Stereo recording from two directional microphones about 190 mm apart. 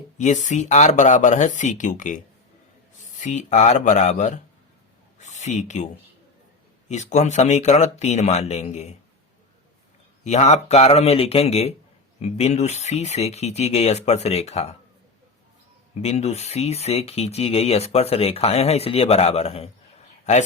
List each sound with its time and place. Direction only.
0.2 s speech: 40° left (ahead or behind)
10.2 s speech: 35° left (ahead or behind)
16.0 s speech: 35° left (ahead or behind)